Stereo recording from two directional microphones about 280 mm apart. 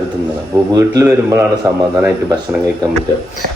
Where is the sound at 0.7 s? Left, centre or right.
Centre.